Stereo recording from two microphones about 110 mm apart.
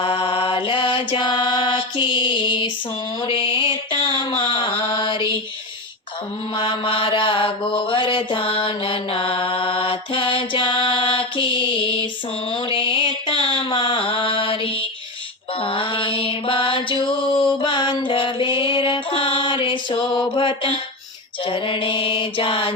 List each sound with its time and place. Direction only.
0.0 s mantra: 60° left (ahead or behind)
6.6 s mantra: 50° left (ahead or behind)
12.7 s music: 50° left (ahead or behind)
13.7 s mantra: 50° left (ahead or behind)